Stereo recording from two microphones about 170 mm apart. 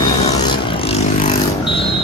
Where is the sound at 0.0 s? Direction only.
25° left (ahead or behind).